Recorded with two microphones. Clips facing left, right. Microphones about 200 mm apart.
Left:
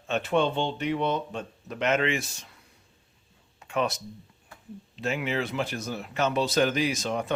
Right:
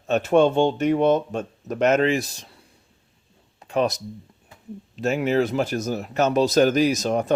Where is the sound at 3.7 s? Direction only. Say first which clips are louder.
Right 6 dB; 40° right (ahead or behind).